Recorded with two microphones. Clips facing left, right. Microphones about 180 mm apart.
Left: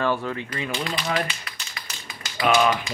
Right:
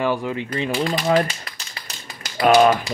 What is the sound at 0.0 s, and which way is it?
Speech, 15° right (ahead or behind).